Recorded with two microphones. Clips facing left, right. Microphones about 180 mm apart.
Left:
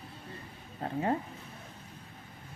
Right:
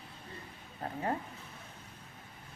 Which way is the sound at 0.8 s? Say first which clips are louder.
Left 4 dB; 20° left (ahead or behind).